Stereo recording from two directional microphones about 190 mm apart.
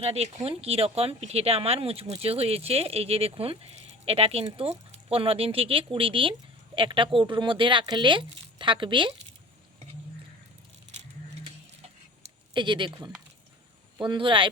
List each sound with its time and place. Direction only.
0.0 s speech: 35° right (ahead or behind)
12.2 s a sound: 25° right (ahead or behind)
14.0 s speech: 25° right (ahead or behind)